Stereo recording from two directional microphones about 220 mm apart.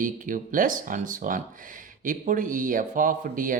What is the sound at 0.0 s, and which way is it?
A man's voice, 40° right (ahead or behind).